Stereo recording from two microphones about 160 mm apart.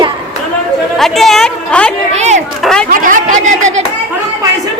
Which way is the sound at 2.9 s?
55° right (ahead or behind).